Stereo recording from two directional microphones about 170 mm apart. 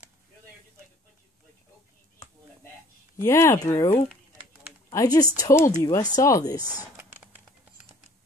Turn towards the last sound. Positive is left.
turn(degrees=20)  # may be behind; listen again after turning